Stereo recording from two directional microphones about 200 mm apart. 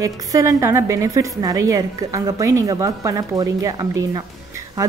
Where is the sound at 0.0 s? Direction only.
15° right (ahead or behind).